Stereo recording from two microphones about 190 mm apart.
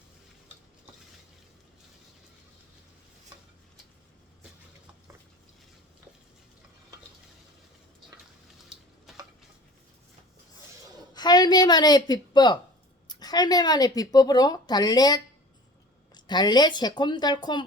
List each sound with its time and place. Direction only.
9.1 s stir: centre (ahead or behind)
11.1 s a woman's voice: 20° left (ahead or behind)